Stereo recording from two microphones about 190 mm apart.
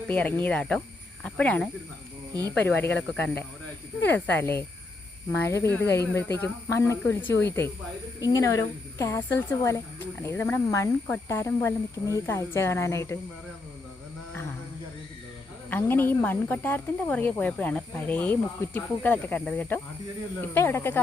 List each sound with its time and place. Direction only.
0.1 s speech: 5° left (ahead or behind)
2.6 s speech: 10° left (ahead or behind)
15.7 s speech: 10° left (ahead or behind)